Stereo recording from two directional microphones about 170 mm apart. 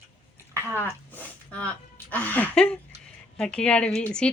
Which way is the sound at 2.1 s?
10° left (ahead or behind).